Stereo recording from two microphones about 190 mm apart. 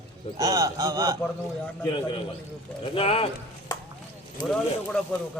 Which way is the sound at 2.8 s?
30° left (ahead or behind).